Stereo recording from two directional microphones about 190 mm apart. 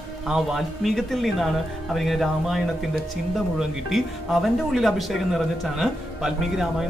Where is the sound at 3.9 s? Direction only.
Centre (ahead or behind).